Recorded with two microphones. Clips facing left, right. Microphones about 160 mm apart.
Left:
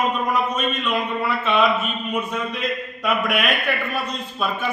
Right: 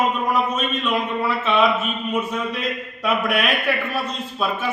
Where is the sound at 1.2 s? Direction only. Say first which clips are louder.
Right 1 dB; centre (ahead or behind).